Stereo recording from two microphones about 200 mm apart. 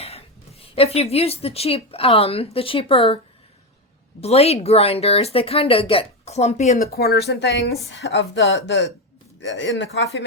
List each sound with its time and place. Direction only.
0.6 s a woman's voice: 30° left (ahead or behind)
4.2 s speech: 30° left (ahead or behind)
6.8 s speech: 50° left (ahead or behind)